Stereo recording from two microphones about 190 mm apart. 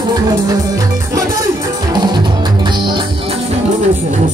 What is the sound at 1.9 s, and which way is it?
Music, 20° right (ahead or behind).